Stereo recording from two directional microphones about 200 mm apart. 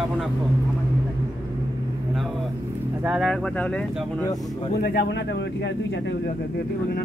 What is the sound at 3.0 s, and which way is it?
Speech, 5° right (ahead or behind).